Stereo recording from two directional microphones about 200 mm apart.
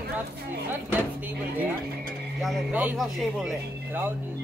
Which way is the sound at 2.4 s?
5° right (ahead or behind).